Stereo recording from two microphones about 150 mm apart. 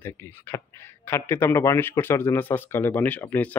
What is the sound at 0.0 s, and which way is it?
Speech, 15° left (ahead or behind).